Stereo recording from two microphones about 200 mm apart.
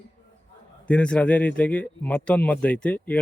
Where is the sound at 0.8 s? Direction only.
5° left (ahead or behind).